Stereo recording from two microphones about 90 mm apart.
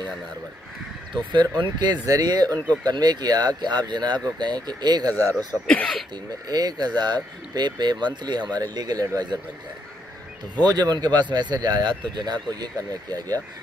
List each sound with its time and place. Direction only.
1.3 s speech: 55° right (ahead or behind)
2.5 s speech: 15° left (ahead or behind)
2.8 s speech: 50° right (ahead or behind)
5.7 s speech: 5° left (ahead or behind)
6.5 s speech: 50° right (ahead or behind)
10.6 s speech: 50° right (ahead or behind)